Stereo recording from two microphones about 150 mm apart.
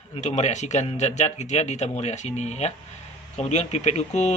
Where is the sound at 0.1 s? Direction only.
50° left (ahead or behind).